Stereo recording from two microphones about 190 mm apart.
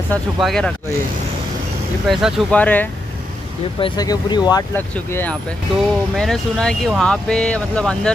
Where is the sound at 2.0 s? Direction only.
5° left (ahead or behind).